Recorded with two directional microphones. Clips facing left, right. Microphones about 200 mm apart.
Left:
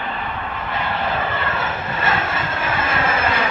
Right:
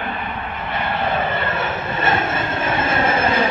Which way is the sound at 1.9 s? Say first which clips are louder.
Right 2 dB; 25° right (ahead or behind).